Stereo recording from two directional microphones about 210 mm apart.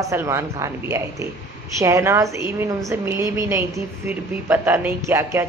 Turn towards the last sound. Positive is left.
turn(degrees=-15)  # may be behind; listen again after turning